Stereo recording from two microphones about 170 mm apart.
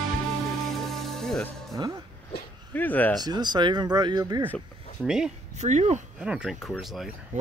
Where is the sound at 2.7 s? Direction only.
10° left (ahead or behind).